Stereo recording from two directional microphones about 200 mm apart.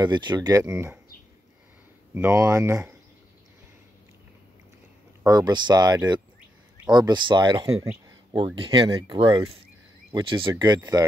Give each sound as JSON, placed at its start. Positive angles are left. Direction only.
{"t": 0.0, "sound": "speech", "side_deg": -20}
{"t": 2.1, "sound": "speech", "side_deg": -15}
{"t": 5.2, "sound": "speech", "side_deg": -20}
{"t": 7.8, "sound": "a sound", "side_deg": -15}
{"t": 8.4, "sound": "speech", "side_deg": -25}